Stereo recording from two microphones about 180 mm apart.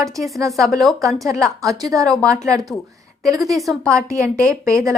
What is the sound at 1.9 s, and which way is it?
Speech, 20° right (ahead or behind).